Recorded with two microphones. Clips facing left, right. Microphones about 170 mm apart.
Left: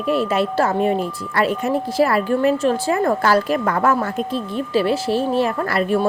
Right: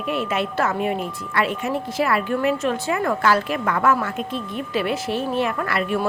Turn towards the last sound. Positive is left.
turn(degrees=35)  # may be behind; listen again after turning